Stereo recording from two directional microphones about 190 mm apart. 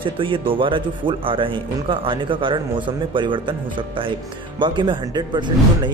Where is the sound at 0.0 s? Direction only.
30° right (ahead or behind).